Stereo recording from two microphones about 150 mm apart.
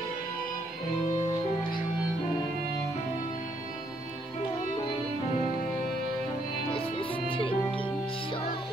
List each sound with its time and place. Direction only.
6.7 s music: 35° left (ahead or behind)